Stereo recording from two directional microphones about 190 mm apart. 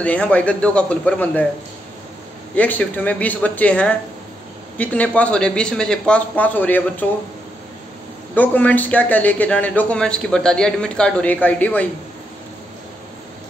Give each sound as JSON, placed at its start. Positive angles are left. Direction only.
{"t": 0.0, "sound": "a man's voice", "side_deg": 5}
{"t": 2.5, "sound": "a man's voice", "side_deg": 10}
{"t": 8.4, "sound": "a man's voice", "side_deg": 10}